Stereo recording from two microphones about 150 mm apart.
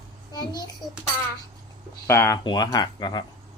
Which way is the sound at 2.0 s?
20° left (ahead or behind).